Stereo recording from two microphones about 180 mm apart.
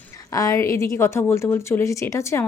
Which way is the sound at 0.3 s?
20° left (ahead or behind).